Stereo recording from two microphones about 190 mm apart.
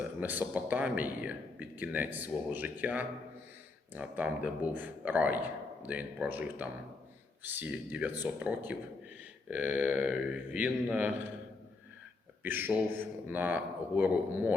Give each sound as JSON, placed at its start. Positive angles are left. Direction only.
{"t": 0.2, "sound": "speech", "side_deg": -10}
{"t": 12.4, "sound": "speech", "side_deg": -10}